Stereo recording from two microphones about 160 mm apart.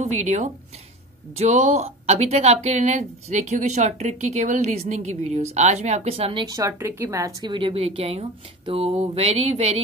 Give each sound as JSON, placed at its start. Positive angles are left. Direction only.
{"t": 0.0, "sound": "speech", "side_deg": -50}
{"t": 6.4, "sound": "speech", "side_deg": -20}
{"t": 7.5, "sound": "speech", "side_deg": -35}